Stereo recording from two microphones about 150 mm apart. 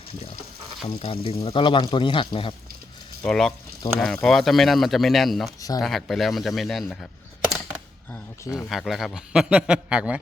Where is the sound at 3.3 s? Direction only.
5° left (ahead or behind).